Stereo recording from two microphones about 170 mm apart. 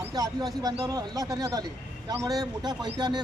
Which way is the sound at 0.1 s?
25° right (ahead or behind).